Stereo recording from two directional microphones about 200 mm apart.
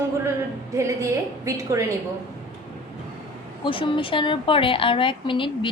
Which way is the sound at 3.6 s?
25° left (ahead or behind).